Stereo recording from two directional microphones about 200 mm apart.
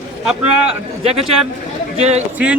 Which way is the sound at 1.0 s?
30° right (ahead or behind).